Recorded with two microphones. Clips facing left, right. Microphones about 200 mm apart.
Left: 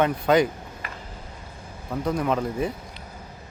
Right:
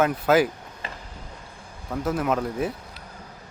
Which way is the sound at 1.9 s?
5° right (ahead or behind).